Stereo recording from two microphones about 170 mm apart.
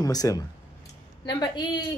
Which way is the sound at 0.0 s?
20° left (ahead or behind).